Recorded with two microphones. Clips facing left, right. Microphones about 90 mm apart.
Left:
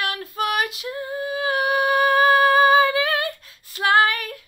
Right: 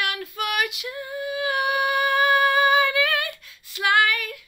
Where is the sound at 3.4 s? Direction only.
40° left (ahead or behind).